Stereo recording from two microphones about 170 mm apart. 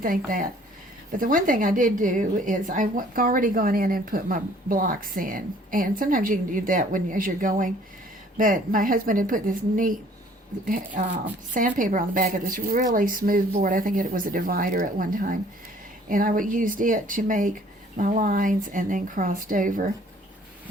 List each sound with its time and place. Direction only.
0.0 s a woman's voice: 55° right (ahead or behind)
11.5 s a woman's voice: 50° right (ahead or behind)